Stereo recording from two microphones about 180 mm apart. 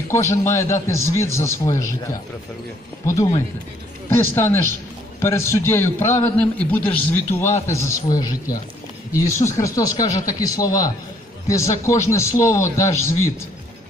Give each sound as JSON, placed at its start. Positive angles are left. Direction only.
{"t": 0.1, "sound": "a man's voice", "side_deg": 15}
{"t": 3.1, "sound": "a man's voice", "side_deg": 15}